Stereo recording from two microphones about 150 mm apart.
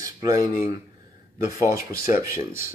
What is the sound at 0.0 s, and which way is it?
Speech, 25° right (ahead or behind).